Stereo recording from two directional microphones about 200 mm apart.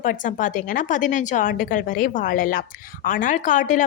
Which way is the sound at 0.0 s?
40° left (ahead or behind).